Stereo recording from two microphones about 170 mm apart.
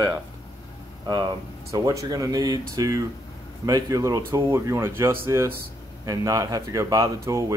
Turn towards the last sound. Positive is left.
turn(degrees=-20)  # may be behind; listen again after turning